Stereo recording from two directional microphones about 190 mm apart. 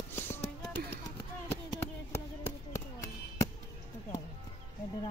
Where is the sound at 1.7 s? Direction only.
15° left (ahead or behind).